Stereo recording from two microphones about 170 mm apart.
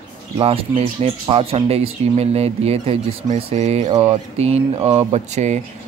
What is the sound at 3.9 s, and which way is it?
Mantra, 25° right (ahead or behind).